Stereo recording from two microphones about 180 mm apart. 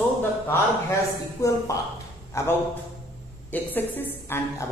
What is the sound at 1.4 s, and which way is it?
A man's voice, 15° left (ahead or behind).